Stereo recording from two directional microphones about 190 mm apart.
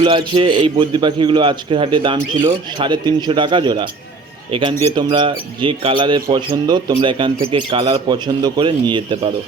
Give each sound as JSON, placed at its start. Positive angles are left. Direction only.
{"t": 0.0, "sound": "a man's voice", "side_deg": -25}